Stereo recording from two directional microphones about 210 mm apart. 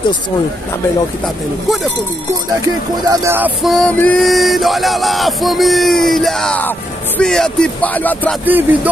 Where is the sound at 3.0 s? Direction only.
10° right (ahead or behind); by 8.3 s 10° left (ahead or behind).